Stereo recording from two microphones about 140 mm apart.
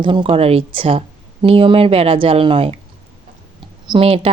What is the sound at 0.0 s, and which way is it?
Speech, 35° right (ahead or behind).